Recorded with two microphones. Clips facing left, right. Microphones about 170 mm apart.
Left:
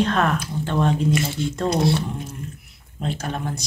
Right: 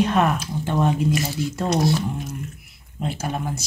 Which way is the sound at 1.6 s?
30° left (ahead or behind).